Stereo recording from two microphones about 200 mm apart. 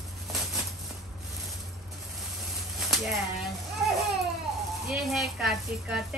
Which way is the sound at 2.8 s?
Centre (ahead or behind).